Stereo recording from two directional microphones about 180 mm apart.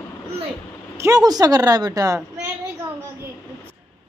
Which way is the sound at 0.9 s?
15° right (ahead or behind).